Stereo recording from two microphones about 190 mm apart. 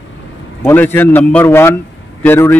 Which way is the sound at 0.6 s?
10° left (ahead or behind).